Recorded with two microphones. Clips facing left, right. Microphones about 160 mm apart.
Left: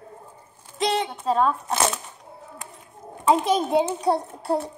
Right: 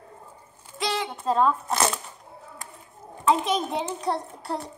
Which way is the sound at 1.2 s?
5° left (ahead or behind).